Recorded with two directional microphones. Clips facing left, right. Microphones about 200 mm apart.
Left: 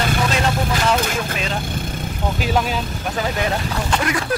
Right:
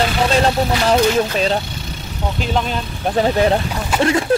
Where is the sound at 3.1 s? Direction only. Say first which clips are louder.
Right 8 dB; 35° right (ahead or behind).